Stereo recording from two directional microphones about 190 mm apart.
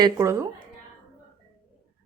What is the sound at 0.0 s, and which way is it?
Speech, 15° right (ahead or behind).